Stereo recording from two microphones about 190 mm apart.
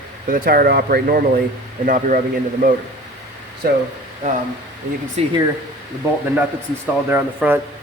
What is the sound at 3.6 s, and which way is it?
Speech, 50° right (ahead or behind).